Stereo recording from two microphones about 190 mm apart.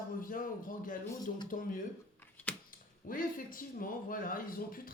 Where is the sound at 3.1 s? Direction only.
45° left (ahead or behind).